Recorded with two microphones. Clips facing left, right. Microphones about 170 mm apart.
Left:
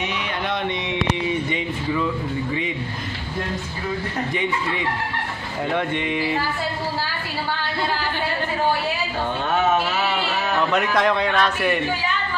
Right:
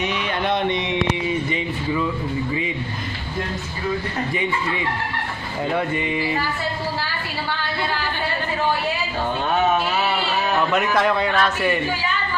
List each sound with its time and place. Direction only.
0.5 s a sound: 20° right (ahead or behind)
5.7 s a man's voice: 5° right (ahead or behind)
10.7 s a man's voice: centre (ahead or behind)